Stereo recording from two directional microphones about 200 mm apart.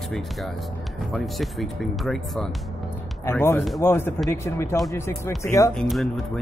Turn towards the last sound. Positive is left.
turn(degrees=0)  # may be behind; listen again after turning